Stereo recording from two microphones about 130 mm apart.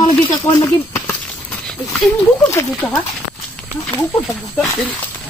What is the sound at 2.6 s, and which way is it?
Speech, 20° left (ahead or behind).